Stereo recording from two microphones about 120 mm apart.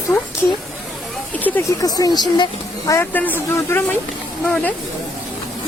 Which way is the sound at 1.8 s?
30° left (ahead or behind).